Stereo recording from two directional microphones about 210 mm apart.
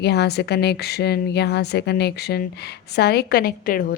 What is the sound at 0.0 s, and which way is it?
A woman's voice, 50° left (ahead or behind).